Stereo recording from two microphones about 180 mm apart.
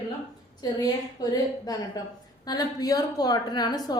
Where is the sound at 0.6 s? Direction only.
20° left (ahead or behind).